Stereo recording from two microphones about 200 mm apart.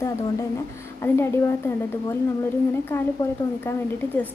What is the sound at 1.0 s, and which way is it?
Speech, 10° left (ahead or behind).